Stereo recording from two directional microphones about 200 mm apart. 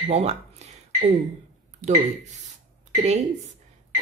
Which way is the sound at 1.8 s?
35° right (ahead or behind).